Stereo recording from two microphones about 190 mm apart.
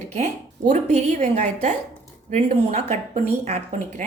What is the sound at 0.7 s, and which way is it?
Speech, 35° right (ahead or behind).